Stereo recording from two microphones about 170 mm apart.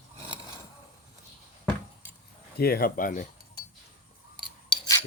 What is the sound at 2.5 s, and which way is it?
Speech, 65° left (ahead or behind).